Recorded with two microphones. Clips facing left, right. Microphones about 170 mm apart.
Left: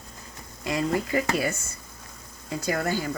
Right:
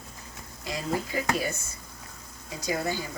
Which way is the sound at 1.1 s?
65° left (ahead or behind).